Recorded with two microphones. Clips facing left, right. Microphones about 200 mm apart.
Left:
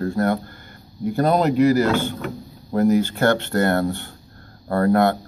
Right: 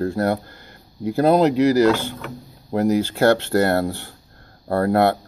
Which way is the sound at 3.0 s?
30° right (ahead or behind).